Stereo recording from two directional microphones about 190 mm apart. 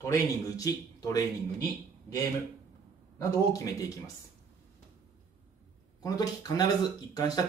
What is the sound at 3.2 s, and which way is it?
Speech, 15° left (ahead or behind).